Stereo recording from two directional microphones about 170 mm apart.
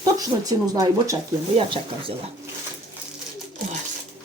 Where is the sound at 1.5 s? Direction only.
30° right (ahead or behind).